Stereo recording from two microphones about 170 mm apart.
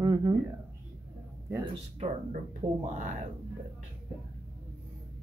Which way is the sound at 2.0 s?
45° right (ahead or behind).